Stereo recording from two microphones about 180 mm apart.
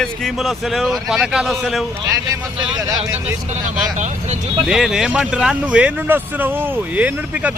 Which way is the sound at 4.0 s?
40° right (ahead or behind).